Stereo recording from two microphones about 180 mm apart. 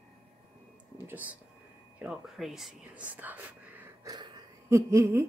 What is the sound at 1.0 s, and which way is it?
Speech, 10° right (ahead or behind).